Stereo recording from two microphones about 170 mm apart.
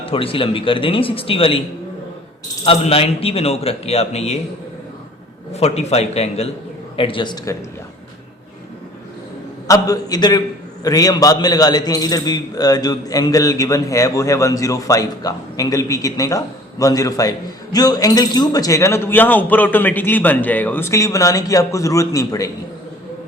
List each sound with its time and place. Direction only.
0.0 s a man's voice: 30° left (ahead or behind)
2.6 s a man's voice: 35° left (ahead or behind)
5.5 s a man's voice: 40° left (ahead or behind)
9.6 s a man's voice: 20° left (ahead or behind)